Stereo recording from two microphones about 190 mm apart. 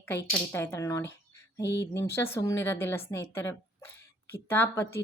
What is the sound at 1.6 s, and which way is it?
Speech, 65° left (ahead or behind).